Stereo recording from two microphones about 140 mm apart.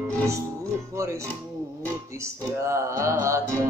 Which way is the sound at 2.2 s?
20° right (ahead or behind).